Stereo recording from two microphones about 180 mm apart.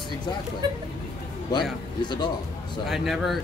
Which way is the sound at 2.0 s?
25° left (ahead or behind).